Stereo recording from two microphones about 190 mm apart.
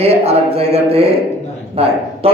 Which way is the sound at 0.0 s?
30° right (ahead or behind).